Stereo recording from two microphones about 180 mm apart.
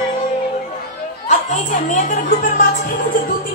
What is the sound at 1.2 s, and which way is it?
Speech, 45° left (ahead or behind).